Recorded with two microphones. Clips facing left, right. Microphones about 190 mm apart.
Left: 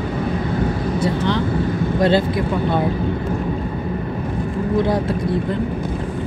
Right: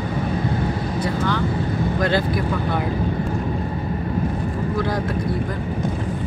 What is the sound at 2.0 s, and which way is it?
Speech, 25° left (ahead or behind).